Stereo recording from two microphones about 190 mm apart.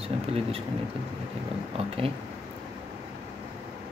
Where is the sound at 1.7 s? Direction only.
30° right (ahead or behind).